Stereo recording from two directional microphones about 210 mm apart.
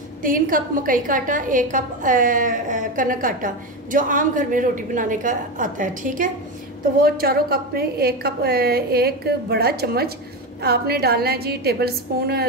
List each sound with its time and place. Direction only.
0.2 s a woman's voice: 40° right (ahead or behind)